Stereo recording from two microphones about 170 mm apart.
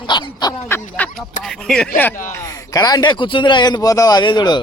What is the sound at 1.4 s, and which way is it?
Speech, 5° left (ahead or behind).